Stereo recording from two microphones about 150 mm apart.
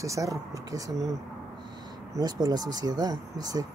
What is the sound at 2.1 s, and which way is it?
Speech, 25° right (ahead or behind).